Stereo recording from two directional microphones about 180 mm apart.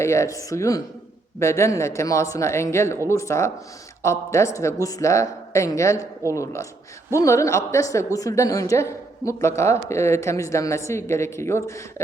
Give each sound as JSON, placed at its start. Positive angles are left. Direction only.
{"t": 0.0, "sound": "a woman's voice", "side_deg": 15}